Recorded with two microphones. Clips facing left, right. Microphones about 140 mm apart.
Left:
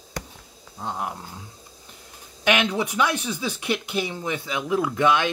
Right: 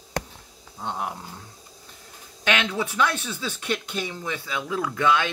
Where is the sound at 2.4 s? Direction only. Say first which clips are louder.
Left 3 dB; 15° left (ahead or behind).